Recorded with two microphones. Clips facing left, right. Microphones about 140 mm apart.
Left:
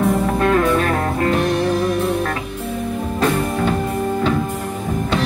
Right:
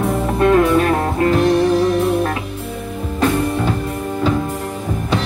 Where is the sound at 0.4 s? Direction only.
20° right (ahead or behind).